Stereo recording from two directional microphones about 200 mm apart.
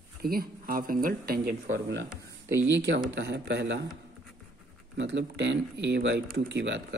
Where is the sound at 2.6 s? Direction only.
65° right (ahead or behind).